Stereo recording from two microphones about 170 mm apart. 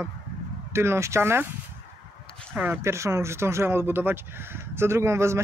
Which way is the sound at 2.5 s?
10° right (ahead or behind).